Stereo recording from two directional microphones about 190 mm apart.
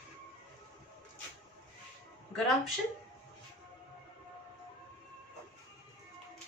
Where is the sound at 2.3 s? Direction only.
Centre (ahead or behind).